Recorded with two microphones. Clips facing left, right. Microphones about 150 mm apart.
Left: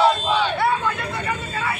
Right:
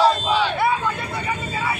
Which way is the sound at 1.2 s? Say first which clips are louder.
Right 2 dB; 5° right (ahead or behind).